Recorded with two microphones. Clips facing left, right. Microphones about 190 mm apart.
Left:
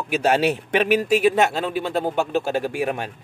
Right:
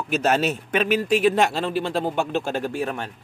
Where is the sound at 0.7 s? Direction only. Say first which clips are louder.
Left 2 dB; 55° left (ahead or behind).